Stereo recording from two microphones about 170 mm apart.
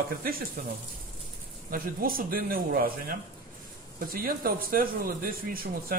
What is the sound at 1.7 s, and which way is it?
Speech, 60° right (ahead or behind).